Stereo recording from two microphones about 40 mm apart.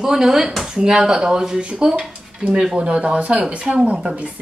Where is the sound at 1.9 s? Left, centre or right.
Centre.